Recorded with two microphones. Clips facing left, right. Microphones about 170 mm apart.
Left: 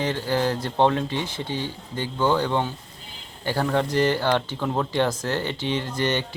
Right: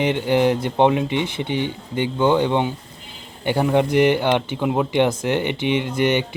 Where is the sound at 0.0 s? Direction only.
20° right (ahead or behind).